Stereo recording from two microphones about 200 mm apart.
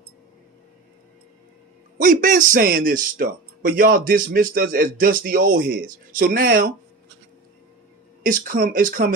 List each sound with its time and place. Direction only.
2.0 s a man's voice: 40° right (ahead or behind); by 5.9 s 55° right (ahead or behind)
5.9 s a man's voice: 40° right (ahead or behind)
8.3 s a man's voice: 45° right (ahead or behind)